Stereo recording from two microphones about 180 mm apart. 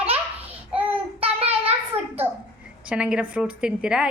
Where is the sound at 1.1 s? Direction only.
35° right (ahead or behind).